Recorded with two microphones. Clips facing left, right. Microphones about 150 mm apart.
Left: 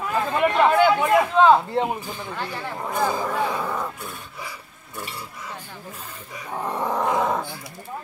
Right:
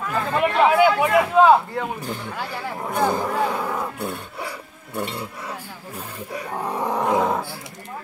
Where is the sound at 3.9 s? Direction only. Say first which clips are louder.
Right 7 dB; 65° right (ahead or behind).